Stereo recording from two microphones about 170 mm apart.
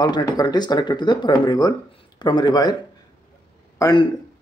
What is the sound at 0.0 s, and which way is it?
A man's voice, 25° left (ahead or behind).